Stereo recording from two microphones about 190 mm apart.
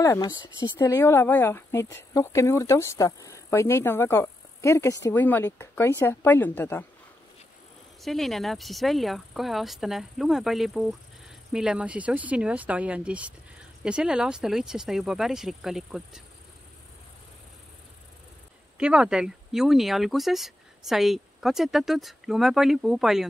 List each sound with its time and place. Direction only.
0.0 s speech: 15° left (ahead or behind)
8.0 s speech: centre (ahead or behind)
18.8 s speech: 5° right (ahead or behind)